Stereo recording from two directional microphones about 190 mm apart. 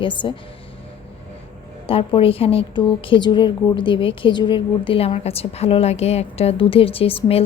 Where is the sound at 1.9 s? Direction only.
30° left (ahead or behind).